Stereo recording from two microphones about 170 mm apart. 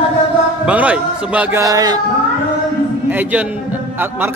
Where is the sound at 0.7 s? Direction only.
10° right (ahead or behind).